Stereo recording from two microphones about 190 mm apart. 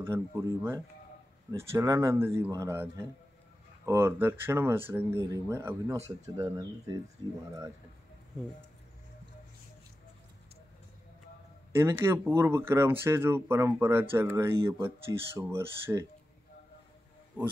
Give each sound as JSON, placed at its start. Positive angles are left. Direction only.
{"t": 0.0, "sound": "speech", "side_deg": -15}
{"t": 11.7, "sound": "speech", "side_deg": -15}
{"t": 17.4, "sound": "speech", "side_deg": -10}